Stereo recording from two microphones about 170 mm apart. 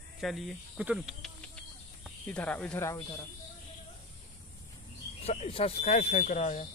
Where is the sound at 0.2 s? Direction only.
Centre (ahead or behind).